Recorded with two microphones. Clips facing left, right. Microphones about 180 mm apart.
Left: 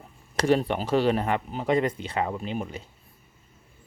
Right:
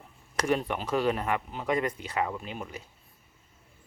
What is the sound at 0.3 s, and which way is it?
Speech, 30° left (ahead or behind).